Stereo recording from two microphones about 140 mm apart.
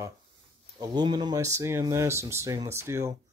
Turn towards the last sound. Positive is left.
turn(degrees=-20)  # may be behind; listen again after turning